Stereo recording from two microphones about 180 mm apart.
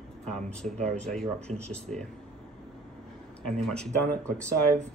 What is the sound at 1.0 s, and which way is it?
Speech, 5° left (ahead or behind).